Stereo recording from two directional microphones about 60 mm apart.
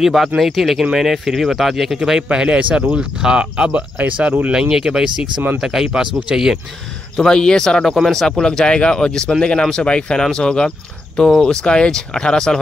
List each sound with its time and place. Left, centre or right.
0.0 s speech: centre; by 4.5 s right
4.5 s speech: centre
7.2 s speech: centre